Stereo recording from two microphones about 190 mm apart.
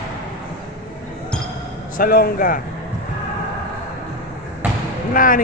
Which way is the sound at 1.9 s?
50° left (ahead or behind).